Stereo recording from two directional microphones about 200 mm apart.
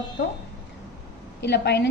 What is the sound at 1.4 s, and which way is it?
Speech, 60° left (ahead or behind).